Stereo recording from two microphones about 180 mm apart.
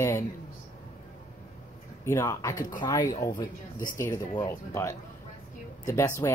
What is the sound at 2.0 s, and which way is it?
Speech, 15° left (ahead or behind).